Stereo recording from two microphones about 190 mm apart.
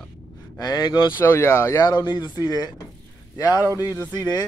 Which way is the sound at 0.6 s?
20° left (ahead or behind).